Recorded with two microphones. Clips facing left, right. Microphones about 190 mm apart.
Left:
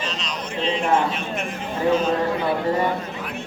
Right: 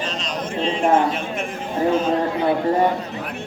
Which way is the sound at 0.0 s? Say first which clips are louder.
Right 3 dB; 50° right (ahead or behind).